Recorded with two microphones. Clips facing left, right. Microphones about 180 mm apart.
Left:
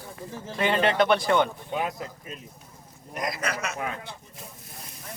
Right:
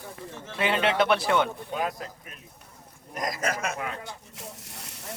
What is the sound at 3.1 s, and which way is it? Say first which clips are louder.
Speech: right 1 dB; 40° right (ahead or behind).